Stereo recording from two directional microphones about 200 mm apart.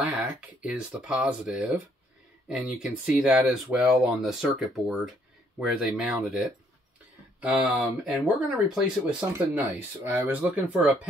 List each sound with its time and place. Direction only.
0.0 s speech: 5° right (ahead or behind)